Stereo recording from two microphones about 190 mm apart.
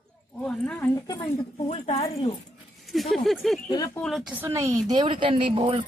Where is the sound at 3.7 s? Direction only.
20° left (ahead or behind).